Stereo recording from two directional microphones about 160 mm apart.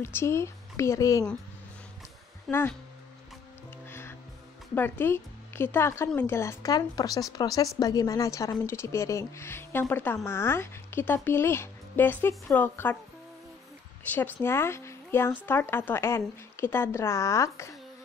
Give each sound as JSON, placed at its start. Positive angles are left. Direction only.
{"t": 0.0, "sound": "speech", "side_deg": 15}
{"t": 2.5, "sound": "speech", "side_deg": 0}
{"t": 3.9, "sound": "music", "side_deg": 15}
{"t": 4.7, "sound": "speech", "side_deg": 15}
{"t": 14.1, "sound": "speech", "side_deg": 15}